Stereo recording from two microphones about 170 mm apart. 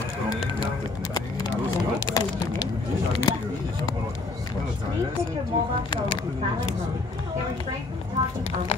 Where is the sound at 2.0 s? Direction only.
25° left (ahead or behind).